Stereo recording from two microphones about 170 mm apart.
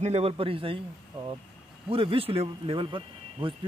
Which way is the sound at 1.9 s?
35° right (ahead or behind).